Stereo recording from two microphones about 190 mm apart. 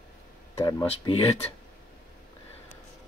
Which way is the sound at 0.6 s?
15° left (ahead or behind).